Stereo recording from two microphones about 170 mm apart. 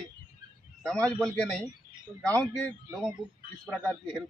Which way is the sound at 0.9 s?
5° left (ahead or behind).